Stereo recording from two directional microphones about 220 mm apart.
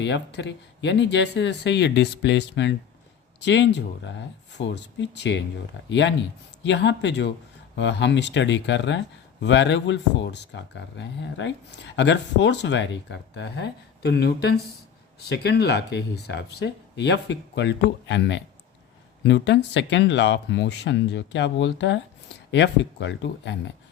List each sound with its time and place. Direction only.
0.0 s speech: 50° left (ahead or behind)